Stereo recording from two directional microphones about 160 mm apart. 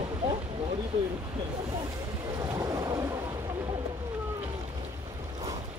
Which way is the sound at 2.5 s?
25° right (ahead or behind).